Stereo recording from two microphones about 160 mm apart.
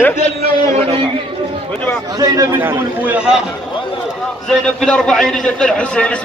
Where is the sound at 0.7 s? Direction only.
35° right (ahead or behind).